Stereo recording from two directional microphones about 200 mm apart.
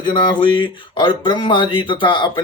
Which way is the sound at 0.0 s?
25° left (ahead or behind).